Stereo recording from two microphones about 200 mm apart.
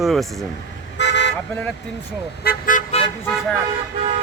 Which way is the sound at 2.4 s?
40° left (ahead or behind).